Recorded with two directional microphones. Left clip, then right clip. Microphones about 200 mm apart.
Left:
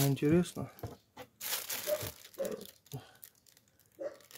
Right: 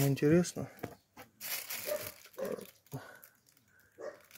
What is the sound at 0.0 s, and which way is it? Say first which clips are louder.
Speech: right 1 dB; centre (ahead or behind).